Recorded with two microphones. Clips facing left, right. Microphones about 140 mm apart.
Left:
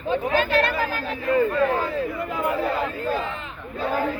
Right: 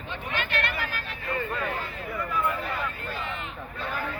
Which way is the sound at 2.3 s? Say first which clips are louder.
Left 2 dB; 90° left.